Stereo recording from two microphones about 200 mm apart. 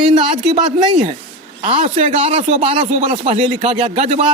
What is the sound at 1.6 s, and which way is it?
Speech, 30° right (ahead or behind).